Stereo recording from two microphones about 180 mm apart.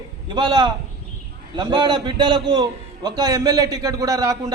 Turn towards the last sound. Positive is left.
turn(degrees=-20)  # may be behind; listen again after turning